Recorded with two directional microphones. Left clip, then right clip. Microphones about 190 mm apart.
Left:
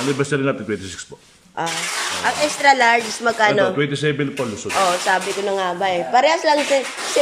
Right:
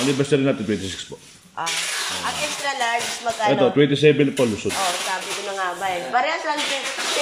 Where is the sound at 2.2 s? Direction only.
45° left (ahead or behind).